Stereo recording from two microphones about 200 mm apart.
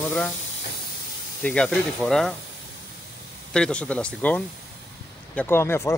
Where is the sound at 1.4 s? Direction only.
5° left (ahead or behind).